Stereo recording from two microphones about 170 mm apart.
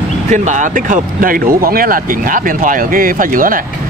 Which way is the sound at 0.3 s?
45° right (ahead or behind).